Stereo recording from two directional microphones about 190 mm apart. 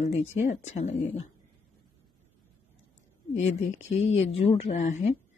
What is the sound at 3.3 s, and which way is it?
A woman's voice, 35° left (ahead or behind).